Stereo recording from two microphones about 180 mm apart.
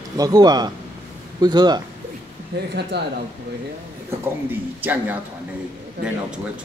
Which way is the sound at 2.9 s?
65° right (ahead or behind).